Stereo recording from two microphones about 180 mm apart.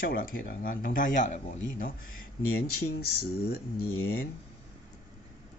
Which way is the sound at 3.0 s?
60° left (ahead or behind).